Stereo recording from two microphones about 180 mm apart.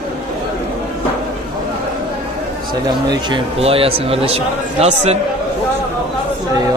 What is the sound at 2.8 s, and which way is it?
Speech, 20° right (ahead or behind).